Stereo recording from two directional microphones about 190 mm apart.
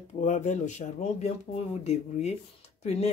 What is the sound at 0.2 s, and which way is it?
Speech, 40° left (ahead or behind).